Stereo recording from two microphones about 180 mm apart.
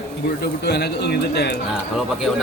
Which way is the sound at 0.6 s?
65° left (ahead or behind).